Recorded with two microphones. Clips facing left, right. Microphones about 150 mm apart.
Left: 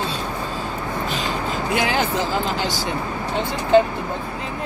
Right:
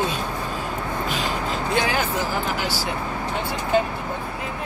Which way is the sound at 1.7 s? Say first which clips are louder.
Left 2 dB; 20° left (ahead or behind).